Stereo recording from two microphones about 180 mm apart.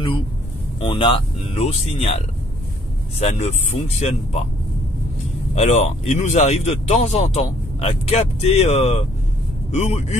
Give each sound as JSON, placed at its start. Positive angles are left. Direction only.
{"t": 0.7, "sound": "speech", "side_deg": 25}
{"t": 5.5, "sound": "speech", "side_deg": 40}